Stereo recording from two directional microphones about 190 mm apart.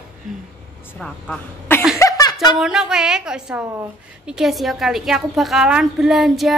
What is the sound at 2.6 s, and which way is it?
A woman's voice, 5° right (ahead or behind).